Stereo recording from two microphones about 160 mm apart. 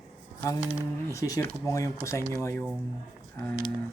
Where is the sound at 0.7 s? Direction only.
20° left (ahead or behind).